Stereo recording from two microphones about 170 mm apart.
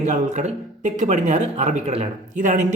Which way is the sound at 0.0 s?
45° right (ahead or behind).